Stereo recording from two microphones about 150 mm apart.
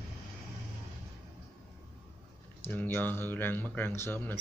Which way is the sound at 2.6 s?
10° left (ahead or behind).